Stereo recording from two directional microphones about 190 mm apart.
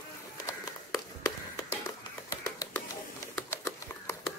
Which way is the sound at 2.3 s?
20° left (ahead or behind).